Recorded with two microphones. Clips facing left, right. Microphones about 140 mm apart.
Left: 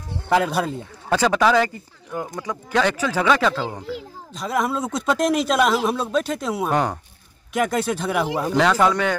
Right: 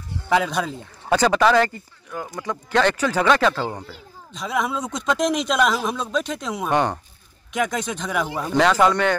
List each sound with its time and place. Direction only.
0.3 s speech: 5° left (ahead or behind)
2.1 s speech: 15° left (ahead or behind)